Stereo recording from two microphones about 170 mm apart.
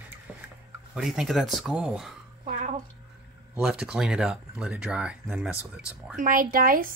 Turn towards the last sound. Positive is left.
turn(degrees=-55)  # may be behind; listen again after turning